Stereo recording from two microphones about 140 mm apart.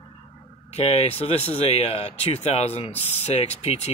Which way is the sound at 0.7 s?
50° left (ahead or behind).